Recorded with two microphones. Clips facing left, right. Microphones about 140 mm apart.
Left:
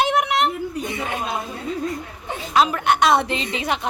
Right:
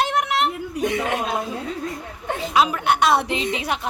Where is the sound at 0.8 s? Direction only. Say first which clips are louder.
Right 4 dB; 75° right (ahead or behind).